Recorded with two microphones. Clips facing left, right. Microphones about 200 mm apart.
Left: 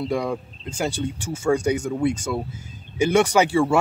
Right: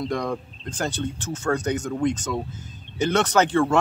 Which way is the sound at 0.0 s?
10° left (ahead or behind).